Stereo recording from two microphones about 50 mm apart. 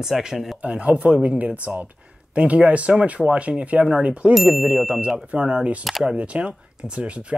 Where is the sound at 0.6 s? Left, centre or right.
Right.